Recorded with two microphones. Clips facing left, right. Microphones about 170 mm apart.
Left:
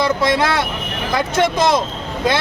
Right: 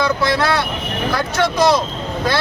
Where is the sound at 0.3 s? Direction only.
20° left (ahead or behind).